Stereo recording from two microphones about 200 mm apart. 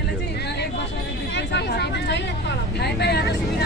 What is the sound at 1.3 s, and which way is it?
Speech, 55° left (ahead or behind).